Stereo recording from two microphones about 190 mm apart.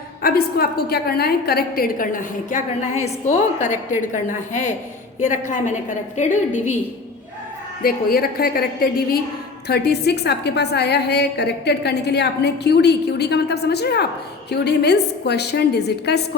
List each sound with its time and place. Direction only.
0.2 s a woman's voice: 50° left (ahead or behind)
5.2 s a woman's voice: 40° left (ahead or behind)
7.8 s a woman's voice: 50° left (ahead or behind)